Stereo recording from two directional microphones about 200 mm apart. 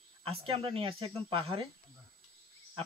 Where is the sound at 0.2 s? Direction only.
25° right (ahead or behind).